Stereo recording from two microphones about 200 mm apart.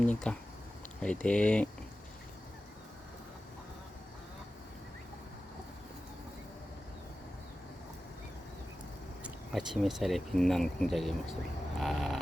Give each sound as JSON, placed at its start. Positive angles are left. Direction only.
{"t": 0.0, "sound": "speech", "side_deg": 5}
{"t": 9.2, "sound": "speech", "side_deg": 0}
{"t": 11.8, "sound": "creak", "side_deg": 0}